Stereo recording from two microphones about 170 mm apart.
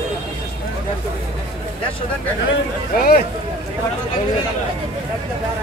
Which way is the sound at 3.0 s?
60° left (ahead or behind).